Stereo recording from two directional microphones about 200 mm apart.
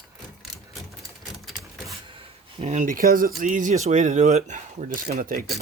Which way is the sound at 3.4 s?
40° right (ahead or behind).